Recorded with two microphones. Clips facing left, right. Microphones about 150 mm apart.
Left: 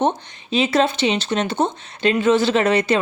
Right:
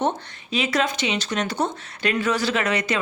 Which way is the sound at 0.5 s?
30° left (ahead or behind).